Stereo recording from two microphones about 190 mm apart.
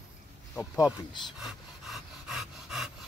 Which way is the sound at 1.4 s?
Centre (ahead or behind).